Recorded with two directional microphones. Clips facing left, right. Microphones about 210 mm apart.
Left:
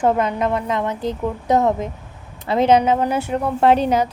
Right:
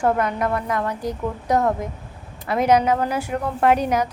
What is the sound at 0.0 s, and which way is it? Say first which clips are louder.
A woman's voice: left 2 dB; 20° left (ahead or behind).